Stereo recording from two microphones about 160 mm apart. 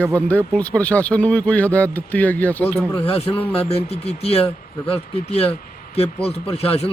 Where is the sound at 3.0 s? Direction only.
35° left (ahead or behind).